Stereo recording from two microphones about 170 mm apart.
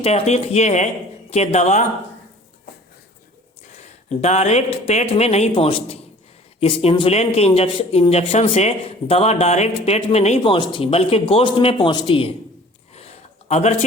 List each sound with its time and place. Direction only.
0.0 s a man's voice: 40° left (ahead or behind)
3.8 s a man's voice: 40° left (ahead or behind)
12.9 s a sound: 40° left (ahead or behind)